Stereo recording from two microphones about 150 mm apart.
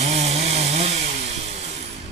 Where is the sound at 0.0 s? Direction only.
50° right (ahead or behind).